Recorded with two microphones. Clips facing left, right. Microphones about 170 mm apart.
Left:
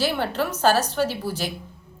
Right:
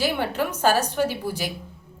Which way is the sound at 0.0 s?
15° right (ahead or behind).